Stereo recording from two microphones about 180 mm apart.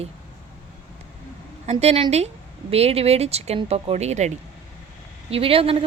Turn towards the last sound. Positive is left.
turn(degrees=-30)  # may be behind; listen again after turning